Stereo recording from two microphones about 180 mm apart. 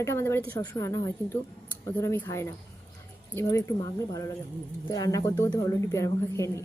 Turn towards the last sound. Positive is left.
turn(degrees=15)  # may be behind; listen again after turning